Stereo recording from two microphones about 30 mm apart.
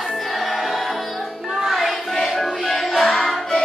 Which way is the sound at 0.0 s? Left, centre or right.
Centre.